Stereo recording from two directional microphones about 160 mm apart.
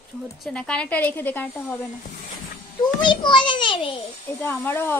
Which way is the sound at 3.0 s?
30° left (ahead or behind).